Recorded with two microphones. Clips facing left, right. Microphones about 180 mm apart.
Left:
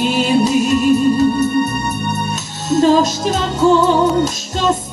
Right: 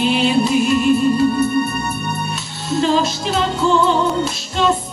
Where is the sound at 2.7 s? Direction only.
45° left (ahead or behind).